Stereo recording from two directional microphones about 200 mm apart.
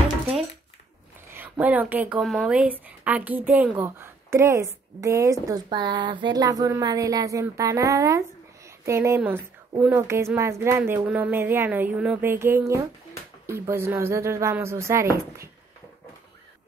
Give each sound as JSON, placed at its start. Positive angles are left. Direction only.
{"t": 1.3, "sound": "a woman's voice", "side_deg": -10}